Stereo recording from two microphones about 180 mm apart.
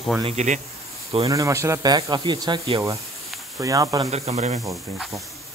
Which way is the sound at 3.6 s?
20° right (ahead or behind).